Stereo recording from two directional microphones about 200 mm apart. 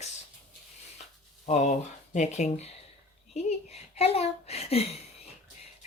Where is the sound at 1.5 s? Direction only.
35° left (ahead or behind).